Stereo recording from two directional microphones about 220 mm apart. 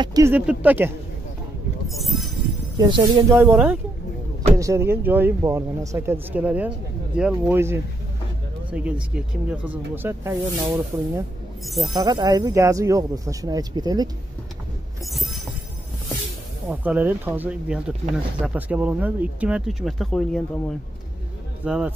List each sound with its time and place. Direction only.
0.0 s speech: 15° right (ahead or behind); by 2.2 s centre (ahead or behind)
2.8 s speech: 20° right (ahead or behind)
15.0 s train: centre (ahead or behind)
16.6 s speech: 5° right (ahead or behind)